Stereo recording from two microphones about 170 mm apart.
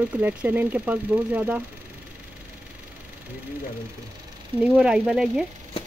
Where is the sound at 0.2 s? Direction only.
10° right (ahead or behind).